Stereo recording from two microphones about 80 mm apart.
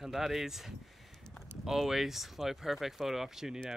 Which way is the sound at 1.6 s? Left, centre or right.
Centre.